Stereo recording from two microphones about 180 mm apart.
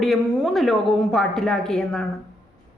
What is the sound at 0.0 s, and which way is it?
A man's voice, centre (ahead or behind).